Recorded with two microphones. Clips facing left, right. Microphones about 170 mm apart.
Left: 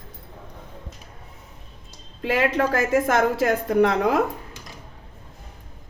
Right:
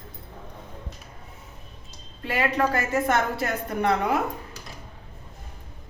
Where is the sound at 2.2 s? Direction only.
90° left.